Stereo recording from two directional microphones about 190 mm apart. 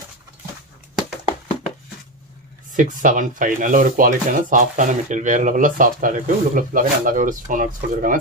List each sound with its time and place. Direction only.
2.7 s speech: 45° right (ahead or behind)